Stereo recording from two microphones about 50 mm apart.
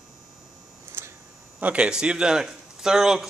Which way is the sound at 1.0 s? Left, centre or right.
Right.